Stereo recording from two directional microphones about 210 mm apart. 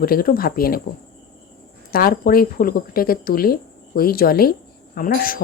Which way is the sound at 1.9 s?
45° left (ahead or behind).